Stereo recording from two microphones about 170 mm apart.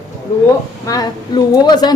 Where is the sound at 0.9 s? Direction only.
25° left (ahead or behind).